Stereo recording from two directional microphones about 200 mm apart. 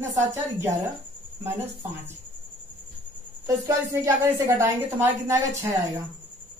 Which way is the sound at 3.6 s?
15° right (ahead or behind).